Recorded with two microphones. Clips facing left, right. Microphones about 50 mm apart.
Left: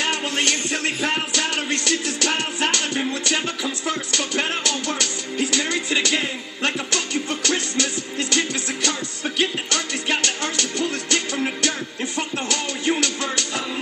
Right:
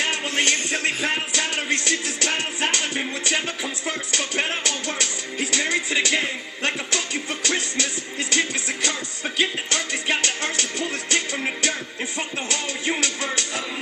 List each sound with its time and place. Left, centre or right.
0.0 s music: centre